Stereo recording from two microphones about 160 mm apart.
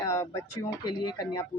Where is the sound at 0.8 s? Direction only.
30° left (ahead or behind).